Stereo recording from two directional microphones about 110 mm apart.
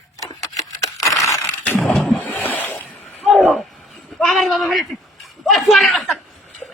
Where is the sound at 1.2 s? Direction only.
30° left (ahead or behind).